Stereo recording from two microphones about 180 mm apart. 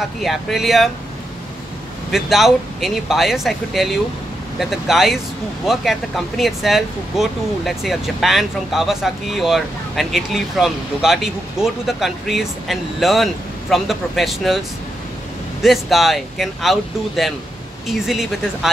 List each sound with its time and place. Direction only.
0.2 s speech: centre (ahead or behind)
2.0 s speech: centre (ahead or behind)
15.6 s speech: centre (ahead or behind)